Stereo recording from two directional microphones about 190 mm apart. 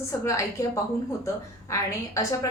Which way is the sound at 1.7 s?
15° left (ahead or behind).